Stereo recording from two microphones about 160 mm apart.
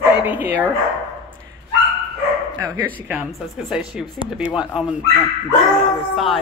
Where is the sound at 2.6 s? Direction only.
20° right (ahead or behind).